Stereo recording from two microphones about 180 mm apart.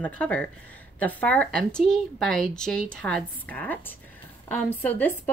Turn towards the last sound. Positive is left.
turn(degrees=10)  # may be behind; listen again after turning